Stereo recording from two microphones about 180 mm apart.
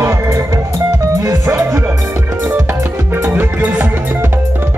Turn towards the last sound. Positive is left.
turn(degrees=-10)  # may be behind; listen again after turning